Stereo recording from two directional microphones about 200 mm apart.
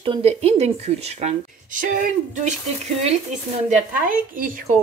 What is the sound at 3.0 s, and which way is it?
Speech, 30° right (ahead or behind).